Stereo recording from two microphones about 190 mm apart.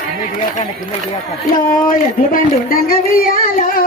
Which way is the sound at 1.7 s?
45° left (ahead or behind).